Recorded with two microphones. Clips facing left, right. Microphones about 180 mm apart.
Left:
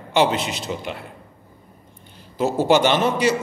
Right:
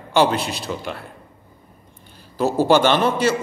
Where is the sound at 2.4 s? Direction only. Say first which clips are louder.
Right 1 dB; 20° left (ahead or behind).